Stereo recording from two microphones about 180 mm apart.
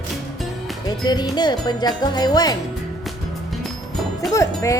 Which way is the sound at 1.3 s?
25° left (ahead or behind).